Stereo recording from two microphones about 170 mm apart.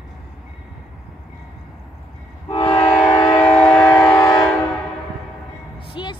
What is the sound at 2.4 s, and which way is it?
Train, 30° left (ahead or behind).